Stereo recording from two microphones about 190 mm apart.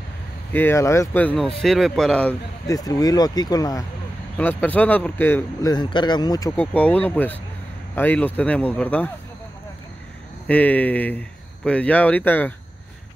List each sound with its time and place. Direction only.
0.5 s speech: 10° left (ahead or behind)
2.7 s speech: 20° left (ahead or behind)
4.4 s speech: 10° left (ahead or behind)
6.5 s speech: 10° left (ahead or behind)
10.4 s speech: 5° left (ahead or behind)